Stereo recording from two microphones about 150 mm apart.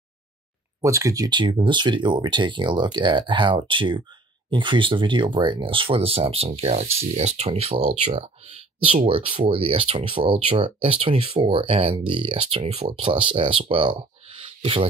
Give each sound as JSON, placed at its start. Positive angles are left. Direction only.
{"t": 0.7, "sound": "speech", "side_deg": -20}